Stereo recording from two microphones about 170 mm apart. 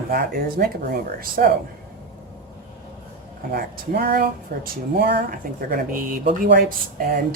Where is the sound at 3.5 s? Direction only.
65° right (ahead or behind).